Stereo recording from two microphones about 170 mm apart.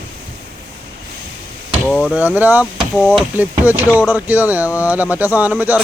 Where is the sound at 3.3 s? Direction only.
10° right (ahead or behind).